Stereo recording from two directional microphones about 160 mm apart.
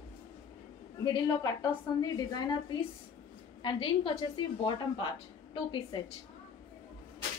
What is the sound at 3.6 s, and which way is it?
A woman's voice, 30° left (ahead or behind).